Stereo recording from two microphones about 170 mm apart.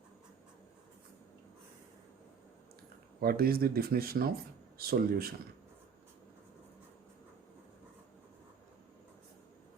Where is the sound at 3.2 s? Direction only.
65° right (ahead or behind).